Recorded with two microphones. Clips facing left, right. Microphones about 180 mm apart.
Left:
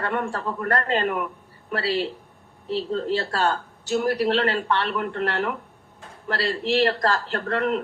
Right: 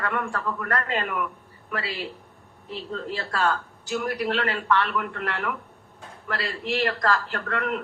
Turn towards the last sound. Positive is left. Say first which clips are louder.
# left 4 dB
turn(degrees=35)  # may be behind; listen again after turning